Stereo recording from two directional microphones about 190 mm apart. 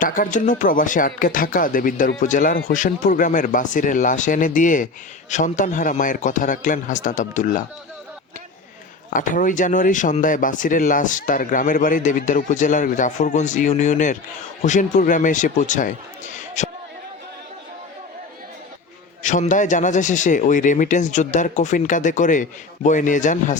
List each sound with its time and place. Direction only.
0.0 s speech: 45° left (ahead or behind)
9.0 s a man's voice: 45° left (ahead or behind)
19.2 s a man's voice: 40° left (ahead or behind)